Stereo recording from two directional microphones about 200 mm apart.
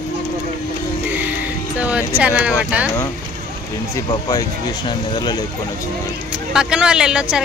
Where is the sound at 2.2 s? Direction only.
5° right (ahead or behind).